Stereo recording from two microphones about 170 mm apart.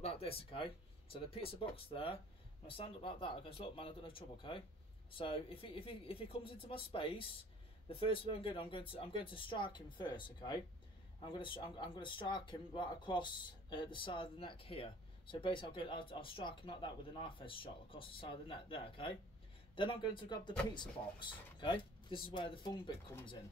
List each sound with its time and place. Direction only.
0.0 s speech: 35° left (ahead or behind)
23.1 s speech: 15° left (ahead or behind)